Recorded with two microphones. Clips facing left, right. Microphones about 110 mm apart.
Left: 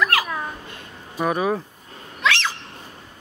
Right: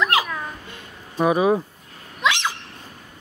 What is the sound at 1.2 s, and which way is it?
Speech, 10° right (ahead or behind).